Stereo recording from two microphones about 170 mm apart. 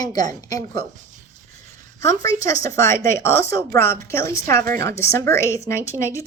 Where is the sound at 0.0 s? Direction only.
25° left (ahead or behind).